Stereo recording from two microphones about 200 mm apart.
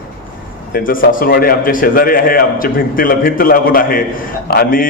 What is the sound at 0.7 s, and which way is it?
A man's voice, 45° left (ahead or behind).